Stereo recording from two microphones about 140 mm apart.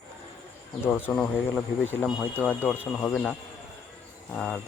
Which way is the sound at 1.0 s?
5° left (ahead or behind).